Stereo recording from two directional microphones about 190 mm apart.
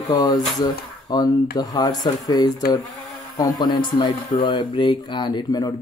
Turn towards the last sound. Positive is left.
turn(degrees=20)  # may be behind; listen again after turning